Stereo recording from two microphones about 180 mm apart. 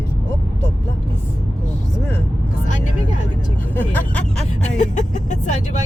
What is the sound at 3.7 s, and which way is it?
Vehicle, 10° left (ahead or behind).